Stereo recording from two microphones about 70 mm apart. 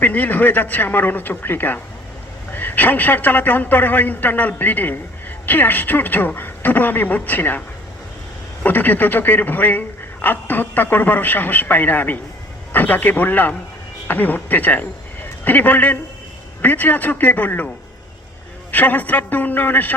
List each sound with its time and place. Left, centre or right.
0.0 s speech: left
8.6 s speech: left
18.7 s speech: left